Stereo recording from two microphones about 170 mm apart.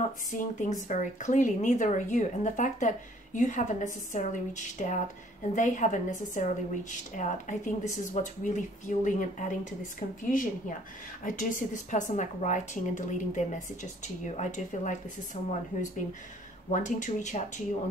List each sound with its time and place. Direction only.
0.3 s a woman's voice: 45° left (ahead or behind)
16.7 s a woman's voice: 45° left (ahead or behind)